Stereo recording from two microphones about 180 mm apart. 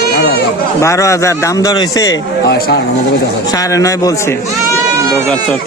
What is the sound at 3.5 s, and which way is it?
Speech, 20° left (ahead or behind).